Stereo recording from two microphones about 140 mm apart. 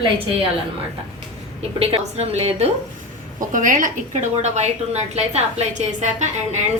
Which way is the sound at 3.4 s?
70° right (ahead or behind).